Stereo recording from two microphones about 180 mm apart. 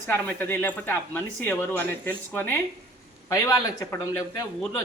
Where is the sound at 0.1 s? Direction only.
10° left (ahead or behind).